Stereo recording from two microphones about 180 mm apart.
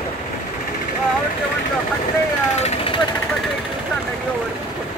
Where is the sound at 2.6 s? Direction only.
30° left (ahead or behind).